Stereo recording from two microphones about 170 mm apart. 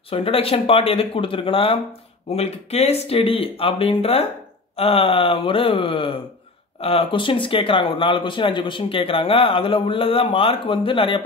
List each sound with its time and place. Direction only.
0.1 s speech: 35° left (ahead or behind)